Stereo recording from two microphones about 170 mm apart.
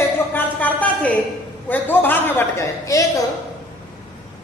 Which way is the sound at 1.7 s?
10° left (ahead or behind).